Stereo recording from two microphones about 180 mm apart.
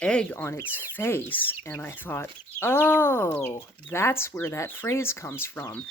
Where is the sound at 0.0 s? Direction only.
5° left (ahead or behind).